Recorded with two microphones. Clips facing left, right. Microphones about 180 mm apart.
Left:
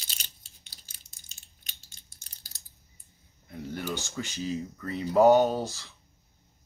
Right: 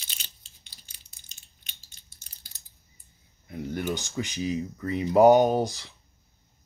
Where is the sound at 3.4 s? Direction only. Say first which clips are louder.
Right 4 dB; 15° right (ahead or behind).